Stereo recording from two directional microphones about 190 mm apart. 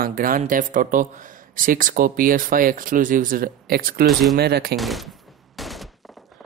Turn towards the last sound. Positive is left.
turn(degrees=0)  # may be behind; listen again after turning